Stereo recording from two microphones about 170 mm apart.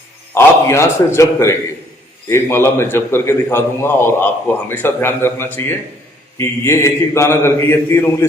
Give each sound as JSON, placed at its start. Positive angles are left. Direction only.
{"t": 0.3, "sound": "a man's voice", "side_deg": 15}